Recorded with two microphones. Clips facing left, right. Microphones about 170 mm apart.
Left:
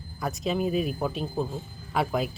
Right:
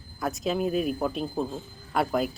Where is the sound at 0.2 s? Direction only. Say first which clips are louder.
Right 1 dB; centre (ahead or behind).